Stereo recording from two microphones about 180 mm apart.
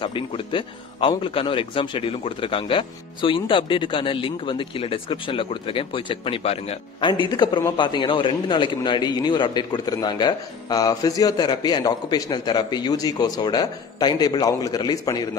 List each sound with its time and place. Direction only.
0.0 s a man's voice: 30° left (ahead or behind)